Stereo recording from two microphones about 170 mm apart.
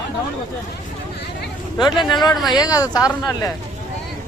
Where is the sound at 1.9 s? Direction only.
Centre (ahead or behind).